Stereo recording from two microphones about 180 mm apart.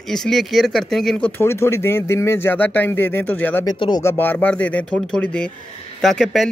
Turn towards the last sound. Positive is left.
turn(degrees=0)  # may be behind; listen again after turning